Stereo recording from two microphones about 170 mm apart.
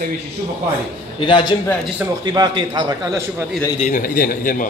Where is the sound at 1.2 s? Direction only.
30° left (ahead or behind).